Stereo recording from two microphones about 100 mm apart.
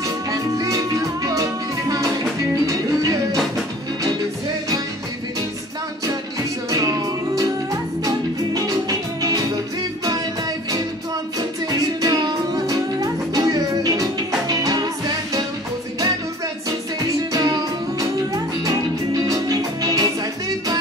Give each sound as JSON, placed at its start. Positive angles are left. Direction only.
{"t": 0.3, "sound": "music", "side_deg": -35}
{"t": 7.3, "sound": "music", "side_deg": -35}
{"t": 12.0, "sound": "music", "side_deg": -40}
{"t": 17.3, "sound": "music", "side_deg": -40}